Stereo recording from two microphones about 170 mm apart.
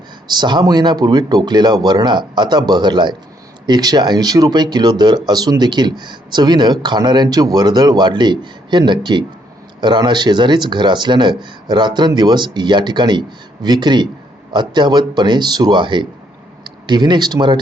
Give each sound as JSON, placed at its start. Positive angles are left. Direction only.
{"t": 0.3, "sound": "speech", "side_deg": -25}